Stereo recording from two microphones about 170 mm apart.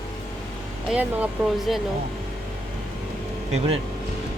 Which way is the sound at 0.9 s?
10° right (ahead or behind).